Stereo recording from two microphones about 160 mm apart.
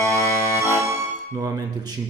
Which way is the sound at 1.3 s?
20° right (ahead or behind).